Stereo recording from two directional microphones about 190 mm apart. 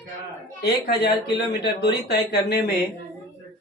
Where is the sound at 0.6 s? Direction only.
60° left (ahead or behind).